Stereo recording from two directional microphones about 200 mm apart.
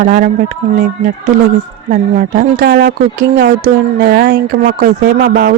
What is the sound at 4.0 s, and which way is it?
A woman's voice, 55° right (ahead or behind).